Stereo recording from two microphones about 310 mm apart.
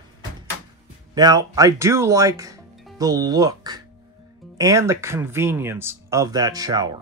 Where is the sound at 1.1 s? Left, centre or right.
Centre.